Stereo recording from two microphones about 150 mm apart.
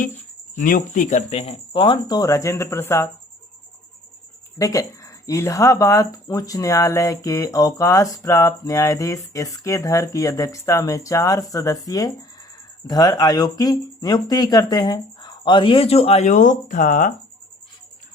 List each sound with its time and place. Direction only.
0.5 s speech: 60° left (ahead or behind); by 3.1 s 20° left (ahead or behind)
4.5 s speech: 20° left (ahead or behind); by 17.1 s 65° left (ahead or behind)